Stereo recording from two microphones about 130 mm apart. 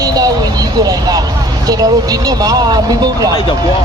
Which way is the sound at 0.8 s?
30° right (ahead or behind).